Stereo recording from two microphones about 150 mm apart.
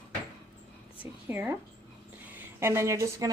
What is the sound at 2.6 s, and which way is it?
Speech, 15° right (ahead or behind).